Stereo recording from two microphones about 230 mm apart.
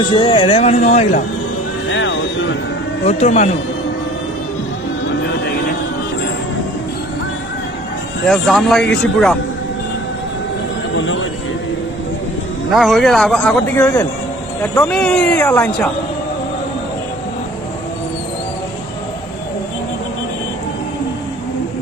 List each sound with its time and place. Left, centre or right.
0.0 s speech: left
1.9 s vehicle: left
3.0 s speech: left
5.2 s vehicle: left
8.3 s speech: centre
10.9 s speech: left
12.7 s speech: centre